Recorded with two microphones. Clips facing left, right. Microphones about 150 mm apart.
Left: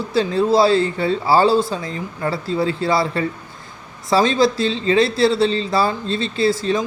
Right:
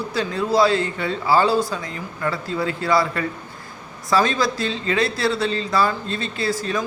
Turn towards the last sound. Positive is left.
turn(degrees=30)  # may be behind; listen again after turning